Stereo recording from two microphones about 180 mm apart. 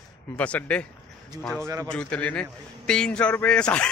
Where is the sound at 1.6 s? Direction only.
20° right (ahead or behind).